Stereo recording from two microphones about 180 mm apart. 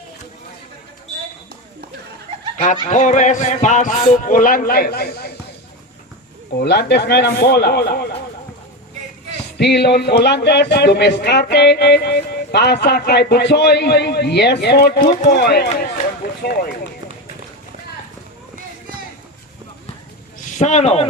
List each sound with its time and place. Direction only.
2.9 s speech: 40° left (ahead or behind); by 5.3 s 60° left (ahead or behind)
6.6 s speech: 65° left (ahead or behind)
9.6 s speech: 65° left (ahead or behind)
20.4 s speech: 40° left (ahead or behind)